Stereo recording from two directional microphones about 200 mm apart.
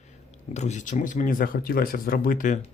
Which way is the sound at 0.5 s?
35° left (ahead or behind).